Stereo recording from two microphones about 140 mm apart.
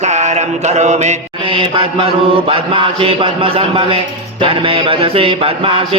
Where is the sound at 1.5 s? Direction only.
40° right (ahead or behind).